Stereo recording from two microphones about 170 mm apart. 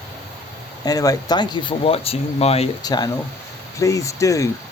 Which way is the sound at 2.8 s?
25° left (ahead or behind).